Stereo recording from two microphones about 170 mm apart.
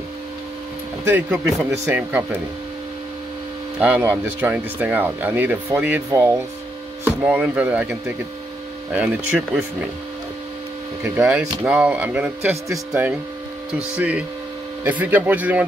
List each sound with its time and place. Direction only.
1.0 s speech: 10° right (ahead or behind)
3.8 s speech: 10° right (ahead or behind)
9.3 s speech: centre (ahead or behind)
11.1 s speech: 10° right (ahead or behind)